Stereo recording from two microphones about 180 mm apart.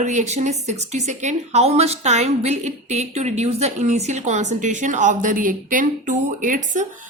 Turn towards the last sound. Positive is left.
turn(degrees=-45)  # may be behind; listen again after turning